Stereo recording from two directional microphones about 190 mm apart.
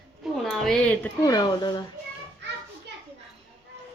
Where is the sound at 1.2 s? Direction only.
20° left (ahead or behind).